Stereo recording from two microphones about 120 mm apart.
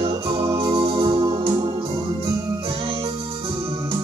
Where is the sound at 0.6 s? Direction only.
45° right (ahead or behind).